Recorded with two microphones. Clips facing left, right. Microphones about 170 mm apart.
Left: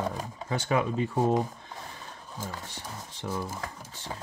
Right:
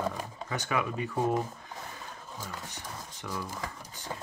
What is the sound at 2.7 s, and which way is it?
Speech, 30° left (ahead or behind).